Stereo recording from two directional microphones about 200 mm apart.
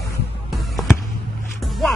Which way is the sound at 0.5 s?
Centre (ahead or behind).